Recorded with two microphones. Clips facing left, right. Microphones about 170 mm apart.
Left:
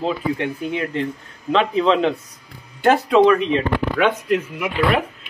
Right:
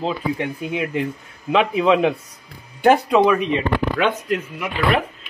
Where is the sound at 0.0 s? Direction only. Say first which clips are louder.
Left 1 dB; 10° right (ahead or behind).